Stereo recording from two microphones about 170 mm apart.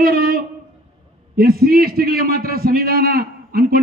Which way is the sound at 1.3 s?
60° right (ahead or behind).